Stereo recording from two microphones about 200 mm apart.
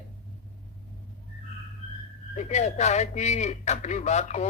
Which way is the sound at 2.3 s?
35° left (ahead or behind).